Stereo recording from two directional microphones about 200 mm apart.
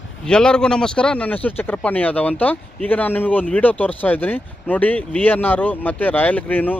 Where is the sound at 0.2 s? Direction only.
5° left (ahead or behind).